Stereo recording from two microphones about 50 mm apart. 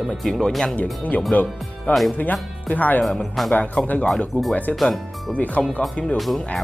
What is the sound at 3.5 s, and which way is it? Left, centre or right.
Speech, left.